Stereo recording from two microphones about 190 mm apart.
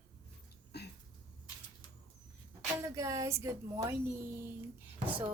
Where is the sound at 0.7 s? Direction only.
60° left (ahead or behind).